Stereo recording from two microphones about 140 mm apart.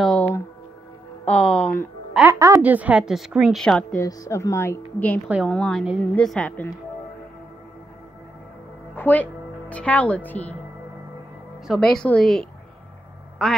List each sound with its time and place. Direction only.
0.0 s a sound: 5° left (ahead or behind)
1.3 s speech: 10° left (ahead or behind)
2.2 s a woman's voice: 20° right (ahead or behind)
2.6 s a woman's voice: 10° right (ahead or behind); by 4.0 s 5° left (ahead or behind)
4.0 s speech: 25° left (ahead or behind)
5.5 s a woman's voice: 5° left (ahead or behind)
8.9 s a woman's voice: 10° left (ahead or behind)
11.6 s a woman's voice: centre (ahead or behind)